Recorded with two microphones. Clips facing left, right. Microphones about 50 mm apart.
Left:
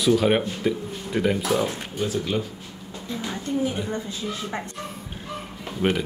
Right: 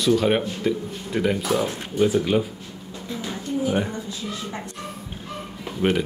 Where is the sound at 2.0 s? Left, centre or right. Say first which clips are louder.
Right 6 dB; centre.